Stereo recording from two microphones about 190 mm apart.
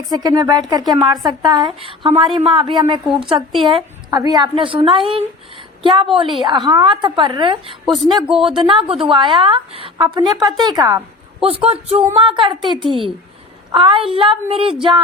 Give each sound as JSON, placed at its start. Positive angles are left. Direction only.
{"t": 0.1, "sound": "a woman's voice", "side_deg": -20}
{"t": 7.9, "sound": "speech", "side_deg": 0}
{"t": 8.5, "sound": "a woman's voice", "side_deg": -25}
{"t": 11.4, "sound": "speech", "side_deg": -30}
{"t": 13.7, "sound": "a woman's voice", "side_deg": -25}